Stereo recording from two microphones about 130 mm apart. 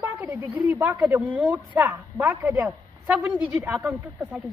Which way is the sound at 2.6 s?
10° right (ahead or behind).